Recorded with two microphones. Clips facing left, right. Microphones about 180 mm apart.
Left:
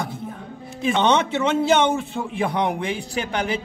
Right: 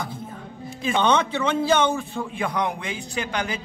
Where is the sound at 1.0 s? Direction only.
20° left (ahead or behind).